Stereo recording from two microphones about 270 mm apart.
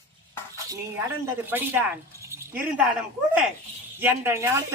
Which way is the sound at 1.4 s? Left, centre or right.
Centre.